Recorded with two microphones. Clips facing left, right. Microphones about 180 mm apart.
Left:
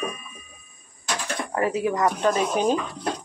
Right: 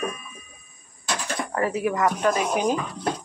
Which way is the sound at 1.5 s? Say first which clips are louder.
Left 1 dB; 20° left (ahead or behind).